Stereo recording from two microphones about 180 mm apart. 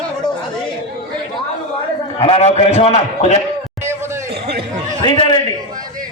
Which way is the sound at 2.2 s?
30° left (ahead or behind).